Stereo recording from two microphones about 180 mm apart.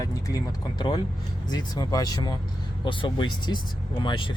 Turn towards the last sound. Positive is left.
turn(degrees=25)  # may be behind; listen again after turning